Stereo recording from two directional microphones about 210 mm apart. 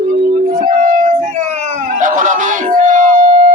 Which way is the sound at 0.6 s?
40° right (ahead or behind).